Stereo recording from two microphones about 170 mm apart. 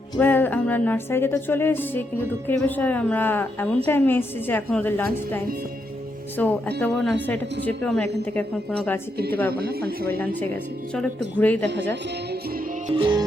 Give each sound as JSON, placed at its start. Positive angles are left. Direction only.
{"t": 0.2, "sound": "speech", "side_deg": 10}
{"t": 6.3, "sound": "speech", "side_deg": 10}
{"t": 9.5, "sound": "a man's voice", "side_deg": -65}
{"t": 10.1, "sound": "speech", "side_deg": 10}
{"t": 12.9, "sound": "music", "side_deg": -30}